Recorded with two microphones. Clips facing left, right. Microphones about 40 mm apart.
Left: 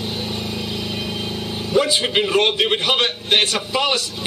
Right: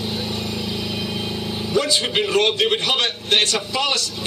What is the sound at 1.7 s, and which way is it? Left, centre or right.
A man's voice, centre.